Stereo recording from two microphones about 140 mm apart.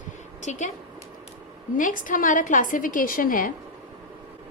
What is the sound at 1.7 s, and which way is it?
A woman's voice, 75° left (ahead or behind).